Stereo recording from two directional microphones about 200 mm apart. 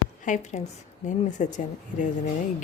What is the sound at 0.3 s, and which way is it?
Speech, 40° left (ahead or behind).